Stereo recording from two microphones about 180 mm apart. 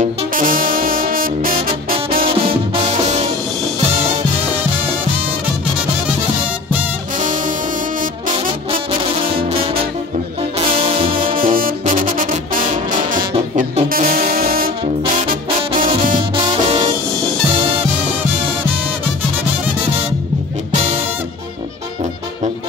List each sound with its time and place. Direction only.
0.0 s music: 50° right (ahead or behind)
2.2 s music: 30° right (ahead or behind)
7.2 s music: 45° right (ahead or behind)
9.2 s brass instrument: 30° right (ahead or behind)
10.6 s music: 35° right (ahead or behind)
11.3 s brass instrument: 50° right (ahead or behind)
16.2 s music: 25° right (ahead or behind)